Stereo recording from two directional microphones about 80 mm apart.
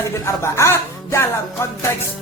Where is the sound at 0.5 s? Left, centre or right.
Left.